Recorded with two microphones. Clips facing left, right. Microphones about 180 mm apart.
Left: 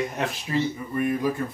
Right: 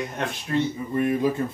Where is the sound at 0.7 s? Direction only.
20° right (ahead or behind).